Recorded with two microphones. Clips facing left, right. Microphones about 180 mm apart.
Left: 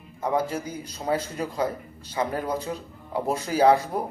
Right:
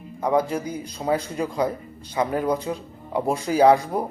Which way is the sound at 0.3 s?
10° right (ahead or behind).